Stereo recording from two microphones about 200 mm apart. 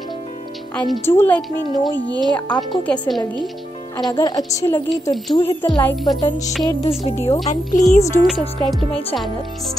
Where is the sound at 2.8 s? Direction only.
5° left (ahead or behind).